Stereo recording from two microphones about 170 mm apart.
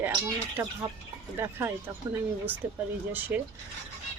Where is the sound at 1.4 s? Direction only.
15° right (ahead or behind).